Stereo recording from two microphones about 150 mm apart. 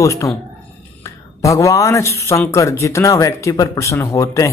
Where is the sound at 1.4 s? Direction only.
20° left (ahead or behind).